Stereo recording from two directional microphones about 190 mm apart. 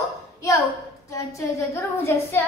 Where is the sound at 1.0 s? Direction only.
15° left (ahead or behind).